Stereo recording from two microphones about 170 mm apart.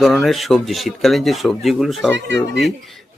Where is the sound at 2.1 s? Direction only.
90° right.